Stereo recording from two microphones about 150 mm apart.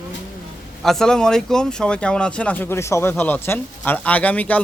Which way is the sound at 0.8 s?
Centre (ahead or behind).